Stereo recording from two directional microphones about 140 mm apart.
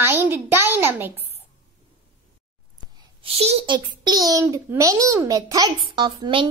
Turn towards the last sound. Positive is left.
turn(degrees=-35)  # may be behind; listen again after turning